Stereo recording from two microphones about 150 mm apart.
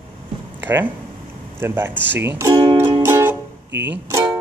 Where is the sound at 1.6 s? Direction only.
15° right (ahead or behind).